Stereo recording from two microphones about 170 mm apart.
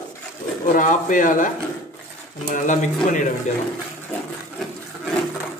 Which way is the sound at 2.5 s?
45° left (ahead or behind).